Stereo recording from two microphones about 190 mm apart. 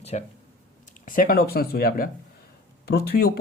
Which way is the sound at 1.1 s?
45° left (ahead or behind).